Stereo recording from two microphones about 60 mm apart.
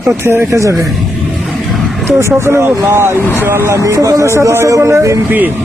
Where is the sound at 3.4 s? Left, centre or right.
Right.